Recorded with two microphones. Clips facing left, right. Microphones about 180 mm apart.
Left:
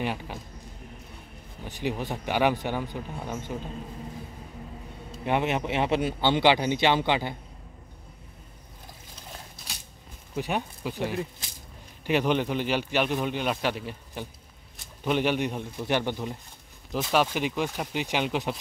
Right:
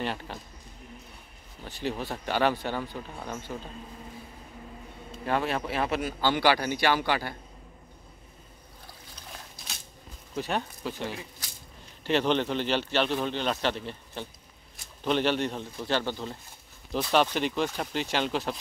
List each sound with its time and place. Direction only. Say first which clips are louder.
0.0 s a man's voice: left 2 dB; 10° left (ahead or behind)
1.6 s a man's voice: left 2 dB; 15° left (ahead or behind)
5.2 s speech: left 2 dB; 20° left (ahead or behind)
10.3 s a man's voice: left 1 dB; 15° left (ahead or behind)
16.9 s a man's voice: even; 5° left (ahead or behind)